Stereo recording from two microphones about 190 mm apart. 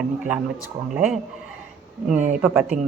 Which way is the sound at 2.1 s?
40° right (ahead or behind).